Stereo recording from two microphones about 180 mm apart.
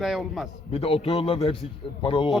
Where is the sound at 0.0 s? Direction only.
Centre (ahead or behind).